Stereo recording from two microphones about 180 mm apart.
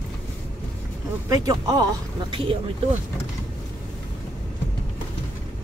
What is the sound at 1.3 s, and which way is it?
Speech, 20° right (ahead or behind).